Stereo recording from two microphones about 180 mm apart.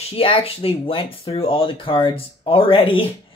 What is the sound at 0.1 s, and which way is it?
Speech, 30° left (ahead or behind).